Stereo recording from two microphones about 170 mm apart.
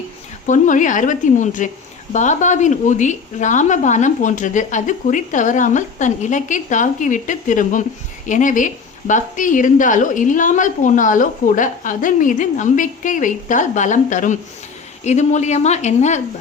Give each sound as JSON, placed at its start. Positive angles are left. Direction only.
{"t": 0.4, "sound": "a woman's voice", "side_deg": 50}